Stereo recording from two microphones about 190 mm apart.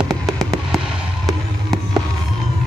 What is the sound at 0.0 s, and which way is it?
Music, centre (ahead or behind).